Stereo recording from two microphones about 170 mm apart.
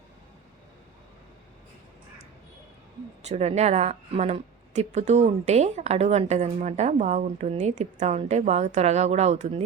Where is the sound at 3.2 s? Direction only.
40° right (ahead or behind).